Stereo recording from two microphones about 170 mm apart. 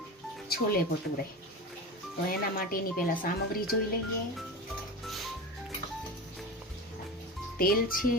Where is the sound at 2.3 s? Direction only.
60° left (ahead or behind).